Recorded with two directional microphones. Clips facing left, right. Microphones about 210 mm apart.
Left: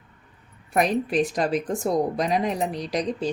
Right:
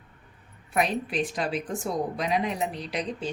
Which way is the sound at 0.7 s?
45° left (ahead or behind).